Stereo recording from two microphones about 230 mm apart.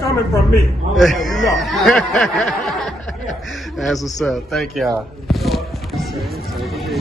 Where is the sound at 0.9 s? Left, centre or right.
Centre.